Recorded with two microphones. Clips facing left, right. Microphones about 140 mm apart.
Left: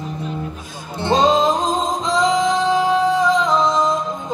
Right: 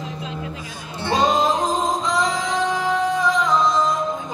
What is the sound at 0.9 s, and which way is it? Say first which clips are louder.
Music: left 4 dB; 20° left (ahead or behind).